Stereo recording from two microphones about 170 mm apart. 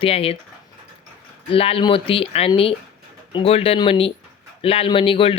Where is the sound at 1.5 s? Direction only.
35° left (ahead or behind).